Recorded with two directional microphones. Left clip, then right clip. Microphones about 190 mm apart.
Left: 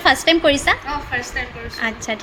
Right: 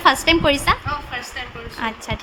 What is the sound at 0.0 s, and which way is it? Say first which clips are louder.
Speech: left 1 dB; 5° left (ahead or behind).